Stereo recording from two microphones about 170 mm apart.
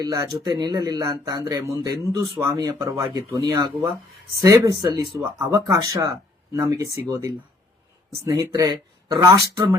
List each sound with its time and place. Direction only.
0.0 s speech: 20° right (ahead or behind)